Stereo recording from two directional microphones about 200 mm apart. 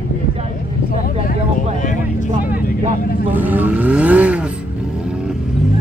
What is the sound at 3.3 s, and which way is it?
Vehicle, 10° right (ahead or behind).